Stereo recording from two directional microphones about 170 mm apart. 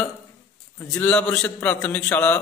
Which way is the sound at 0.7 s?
10° left (ahead or behind).